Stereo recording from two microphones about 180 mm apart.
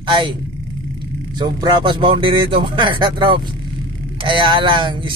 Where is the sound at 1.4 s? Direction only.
25° right (ahead or behind).